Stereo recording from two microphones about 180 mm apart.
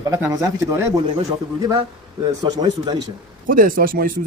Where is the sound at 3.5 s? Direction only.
50° right (ahead or behind).